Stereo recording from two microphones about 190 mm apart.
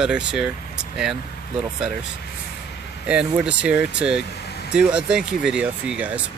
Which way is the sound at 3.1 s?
5° right (ahead or behind).